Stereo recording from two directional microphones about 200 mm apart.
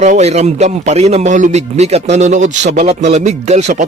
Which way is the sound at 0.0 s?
35° right (ahead or behind).